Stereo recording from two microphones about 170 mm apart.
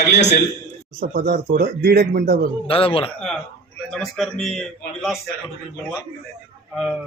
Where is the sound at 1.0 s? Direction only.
60° right (ahead or behind).